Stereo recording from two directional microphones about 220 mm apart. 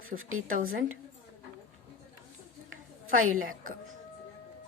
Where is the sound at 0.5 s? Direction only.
40° right (ahead or behind).